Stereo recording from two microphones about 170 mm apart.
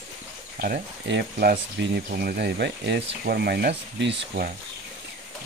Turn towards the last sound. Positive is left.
turn(degrees=-80)